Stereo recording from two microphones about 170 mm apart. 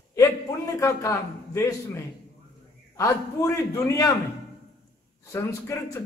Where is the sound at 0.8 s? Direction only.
20° left (ahead or behind).